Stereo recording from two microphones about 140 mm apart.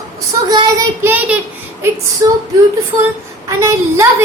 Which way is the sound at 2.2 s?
25° right (ahead or behind).